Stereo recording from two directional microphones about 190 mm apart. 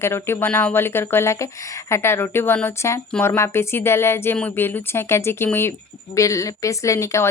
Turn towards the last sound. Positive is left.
turn(degrees=15)  # may be behind; listen again after turning